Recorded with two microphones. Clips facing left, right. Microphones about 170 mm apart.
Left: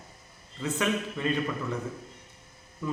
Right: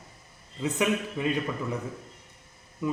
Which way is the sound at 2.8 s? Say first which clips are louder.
Right 3 dB; 20° right (ahead or behind).